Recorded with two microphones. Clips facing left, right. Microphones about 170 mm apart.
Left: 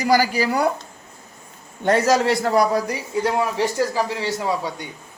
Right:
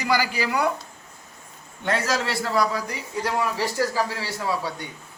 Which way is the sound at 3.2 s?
20° left (ahead or behind).